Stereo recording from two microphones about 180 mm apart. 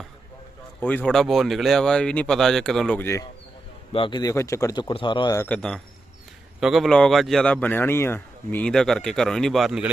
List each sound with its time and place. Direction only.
0.8 s a man's voice: 10° left (ahead or behind)
3.9 s a man's voice: 25° left (ahead or behind)
5.5 s a man's voice: 5° left (ahead or behind)